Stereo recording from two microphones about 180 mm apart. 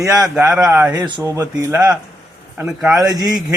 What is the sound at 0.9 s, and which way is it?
Speech, 25° right (ahead or behind).